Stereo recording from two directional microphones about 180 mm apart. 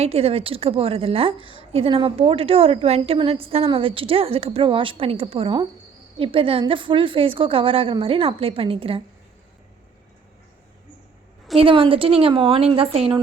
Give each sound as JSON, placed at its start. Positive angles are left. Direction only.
{"t": 0.0, "sound": "a woman's voice", "side_deg": -35}
{"t": 11.5, "sound": "a woman's voice", "side_deg": -30}